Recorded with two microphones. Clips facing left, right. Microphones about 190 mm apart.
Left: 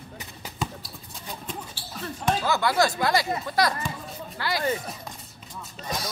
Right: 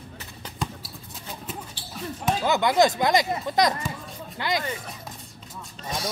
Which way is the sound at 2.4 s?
20° right (ahead or behind).